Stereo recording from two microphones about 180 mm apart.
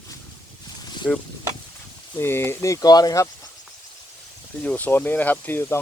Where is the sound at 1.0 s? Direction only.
10° left (ahead or behind).